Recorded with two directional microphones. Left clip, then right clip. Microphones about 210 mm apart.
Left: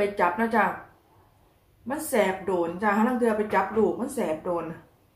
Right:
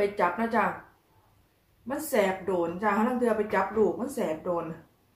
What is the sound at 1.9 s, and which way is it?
A woman's voice, 5° left (ahead or behind).